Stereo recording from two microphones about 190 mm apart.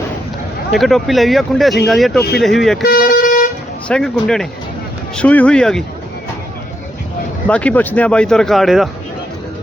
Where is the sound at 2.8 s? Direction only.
50° left (ahead or behind).